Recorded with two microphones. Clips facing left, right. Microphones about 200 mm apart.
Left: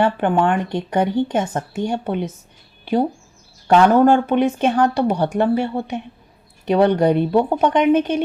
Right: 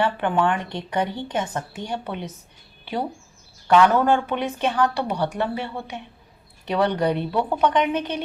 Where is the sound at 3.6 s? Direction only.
40° left (ahead or behind).